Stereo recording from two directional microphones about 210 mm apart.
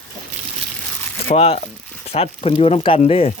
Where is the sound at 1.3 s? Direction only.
30° left (ahead or behind).